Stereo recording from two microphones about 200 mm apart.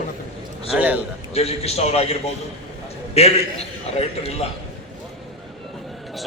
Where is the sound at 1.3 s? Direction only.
30° left (ahead or behind).